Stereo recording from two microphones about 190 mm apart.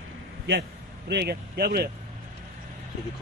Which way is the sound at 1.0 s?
60° right (ahead or behind).